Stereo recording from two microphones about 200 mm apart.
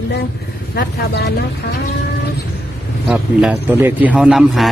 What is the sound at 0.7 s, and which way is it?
Speech, 55° left (ahead or behind).